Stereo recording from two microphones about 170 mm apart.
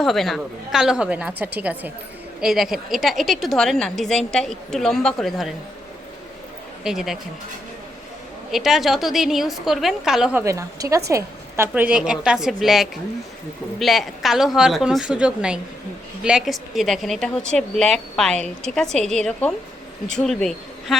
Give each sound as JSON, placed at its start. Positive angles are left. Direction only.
{"t": 0.0, "sound": "a woman's voice", "side_deg": 0}
{"t": 6.8, "sound": "a woman's voice", "side_deg": 0}
{"t": 8.5, "sound": "a woman's voice", "side_deg": 0}
{"t": 10.4, "sound": "a woman's voice", "side_deg": -20}